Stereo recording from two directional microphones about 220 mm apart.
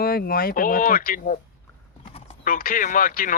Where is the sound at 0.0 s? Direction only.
45° left (ahead or behind).